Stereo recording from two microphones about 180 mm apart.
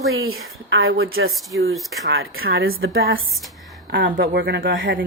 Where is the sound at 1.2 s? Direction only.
90° right.